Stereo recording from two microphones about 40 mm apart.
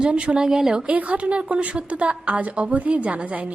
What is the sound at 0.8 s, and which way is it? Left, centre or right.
A woman's voice, right.